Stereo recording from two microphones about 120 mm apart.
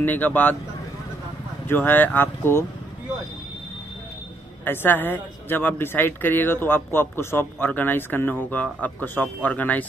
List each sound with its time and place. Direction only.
0.0 s a man's voice: 15° left (ahead or behind)
1.7 s a man's voice: 15° left (ahead or behind)
4.6 s a man's voice: 15° left (ahead or behind)